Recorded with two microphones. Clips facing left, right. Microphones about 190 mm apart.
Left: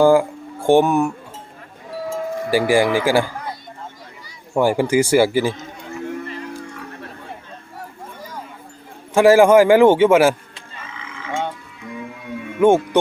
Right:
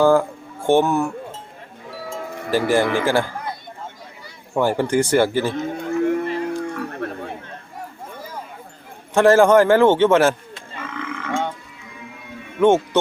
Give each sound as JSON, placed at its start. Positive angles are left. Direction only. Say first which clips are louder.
{"t": 0.0, "sound": "speech", "louder": "left 2 dB", "side_deg": 10}
{"t": 2.5, "sound": "a man's voice", "louder": "left 2 dB", "side_deg": 10}
{"t": 4.5, "sound": "a man's voice", "louder": "left 2 dB", "side_deg": 10}
{"t": 5.5, "sound": "music", "louder": "right 10 dB", "side_deg": -60}
{"t": 7.0, "sound": "a sound", "louder": "right 9 dB", "side_deg": -60}
{"t": 9.1, "sound": "a man's voice", "louder": "left 2 dB", "side_deg": 10}
{"t": 10.8, "sound": "frog", "louder": "right 7 dB", "side_deg": -60}
{"t": 12.5, "sound": "speech", "louder": "left 1 dB", "side_deg": 10}